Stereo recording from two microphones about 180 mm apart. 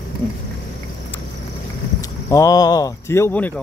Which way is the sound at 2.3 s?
20° left (ahead or behind).